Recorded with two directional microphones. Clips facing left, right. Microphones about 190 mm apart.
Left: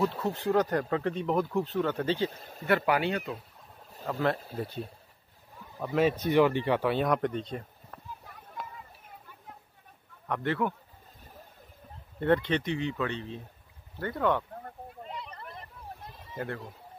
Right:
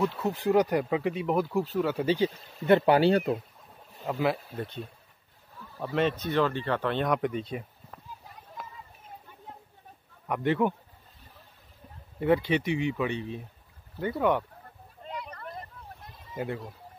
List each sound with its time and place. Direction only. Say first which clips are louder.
0.2 s speech: right 3 dB; 10° right (ahead or behind)
2.6 s speech: right 6 dB; 25° right (ahead or behind)
4.0 s speech: right 1 dB; 10° right (ahead or behind)
5.9 s speech: left 3 dB; 10° left (ahead or behind); by 8.0 s 5° right (ahead or behind)
10.2 s speech: right 4 dB; 15° right (ahead or behind)
12.2 s speech: right 1 dB; 10° right (ahead or behind)
15.0 s a sound: right 6 dB; 25° left (ahead or behind)
16.3 s speech: right 3 dB; 15° right (ahead or behind)